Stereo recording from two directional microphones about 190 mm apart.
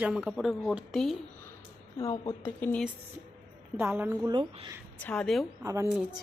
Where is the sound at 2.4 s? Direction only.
10° left (ahead or behind).